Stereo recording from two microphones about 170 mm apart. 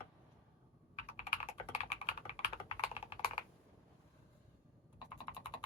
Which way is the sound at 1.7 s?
35° left (ahead or behind).